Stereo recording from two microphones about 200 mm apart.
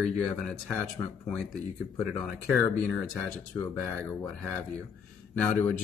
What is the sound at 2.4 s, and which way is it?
Speech, 5° left (ahead or behind).